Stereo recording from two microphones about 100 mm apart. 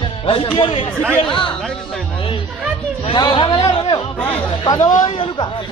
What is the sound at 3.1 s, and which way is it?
Speech, 50° left (ahead or behind).